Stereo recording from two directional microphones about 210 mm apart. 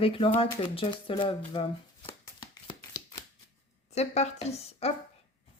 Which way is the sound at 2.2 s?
20° left (ahead or behind).